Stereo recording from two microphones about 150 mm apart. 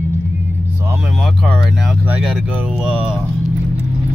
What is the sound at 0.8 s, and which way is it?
Speech, 15° right (ahead or behind).